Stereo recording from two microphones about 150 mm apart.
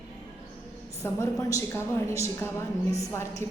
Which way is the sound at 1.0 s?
20° left (ahead or behind).